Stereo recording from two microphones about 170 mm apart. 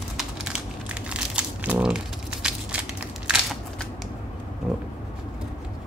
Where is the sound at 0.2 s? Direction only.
5° right (ahead or behind).